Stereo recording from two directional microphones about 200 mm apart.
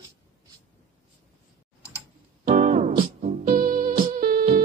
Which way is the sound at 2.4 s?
35° right (ahead or behind).